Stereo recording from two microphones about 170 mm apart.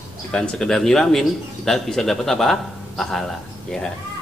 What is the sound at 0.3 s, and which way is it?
A man's voice, 5° left (ahead or behind).